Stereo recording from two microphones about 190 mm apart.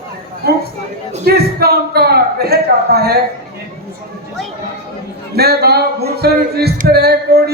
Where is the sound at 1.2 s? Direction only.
55° right (ahead or behind).